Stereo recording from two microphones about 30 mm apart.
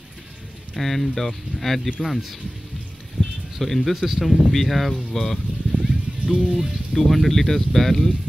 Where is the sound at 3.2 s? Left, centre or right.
Centre.